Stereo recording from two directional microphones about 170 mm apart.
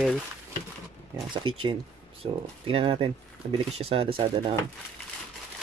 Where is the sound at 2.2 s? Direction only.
30° right (ahead or behind).